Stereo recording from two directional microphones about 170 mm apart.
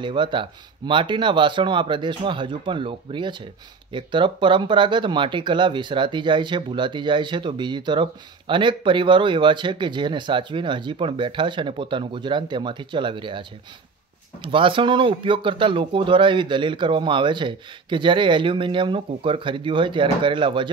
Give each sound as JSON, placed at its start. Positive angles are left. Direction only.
{"t": 0.0, "sound": "speech", "side_deg": -30}